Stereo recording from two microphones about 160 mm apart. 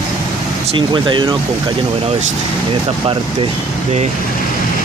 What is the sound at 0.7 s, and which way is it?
Speech, 30° right (ahead or behind).